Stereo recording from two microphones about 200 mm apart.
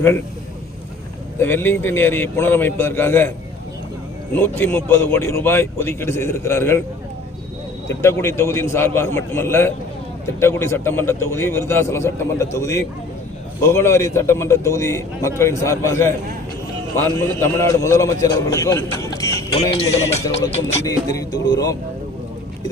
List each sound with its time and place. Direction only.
1.4 s a man's voice: 10° left (ahead or behind)
4.4 s a man's voice: 10° left (ahead or behind)
7.9 s a man's voice: 15° left (ahead or behind)
17.2 s a man's voice: 15° left (ahead or behind)
19.7 s music: 30° left (ahead or behind)
20.8 s a man's voice: 20° left (ahead or behind)